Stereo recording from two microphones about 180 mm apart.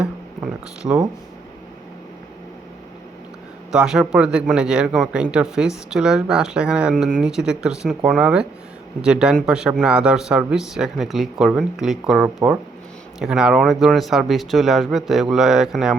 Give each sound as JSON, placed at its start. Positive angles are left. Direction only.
{"t": 0.8, "sound": "speech", "side_deg": -20}
{"t": 3.7, "sound": "a man's voice", "side_deg": -5}